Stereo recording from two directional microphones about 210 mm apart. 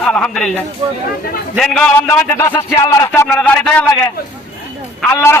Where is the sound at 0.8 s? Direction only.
25° right (ahead or behind).